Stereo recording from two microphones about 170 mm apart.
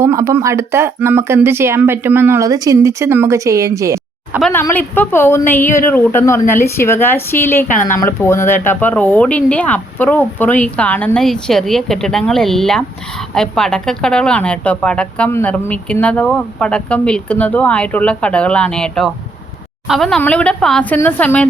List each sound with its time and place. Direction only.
0.0 s speech: 15° right (ahead or behind)
4.5 s a woman's voice: 10° left (ahead or behind)